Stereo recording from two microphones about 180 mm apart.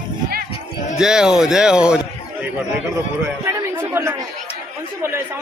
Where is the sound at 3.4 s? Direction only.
15° right (ahead or behind).